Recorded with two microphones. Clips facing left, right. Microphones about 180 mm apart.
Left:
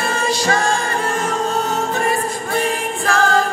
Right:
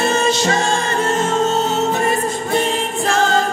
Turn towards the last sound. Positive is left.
turn(degrees=-25)  # may be behind; listen again after turning